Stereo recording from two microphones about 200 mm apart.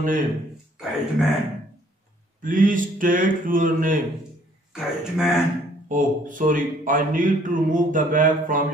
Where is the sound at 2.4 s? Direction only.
40° right (ahead or behind).